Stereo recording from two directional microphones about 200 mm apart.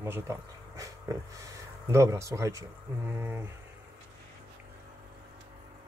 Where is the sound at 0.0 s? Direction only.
15° right (ahead or behind).